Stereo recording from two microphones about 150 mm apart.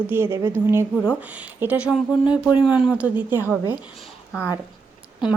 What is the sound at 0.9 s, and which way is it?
Speech, 5° left (ahead or behind).